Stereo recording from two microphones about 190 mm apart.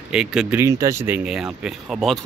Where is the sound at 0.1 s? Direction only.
5° right (ahead or behind).